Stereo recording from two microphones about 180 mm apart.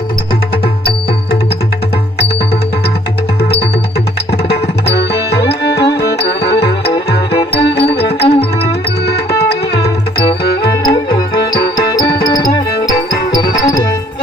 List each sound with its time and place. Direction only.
4.4 s music: 65° left (ahead or behind)
9.5 s tabla: 65° left (ahead or behind)
10.4 s music: 65° left (ahead or behind)
10.9 s music: 25° left (ahead or behind)